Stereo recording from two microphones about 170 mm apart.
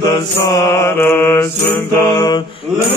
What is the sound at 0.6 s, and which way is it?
Mantra, 15° left (ahead or behind).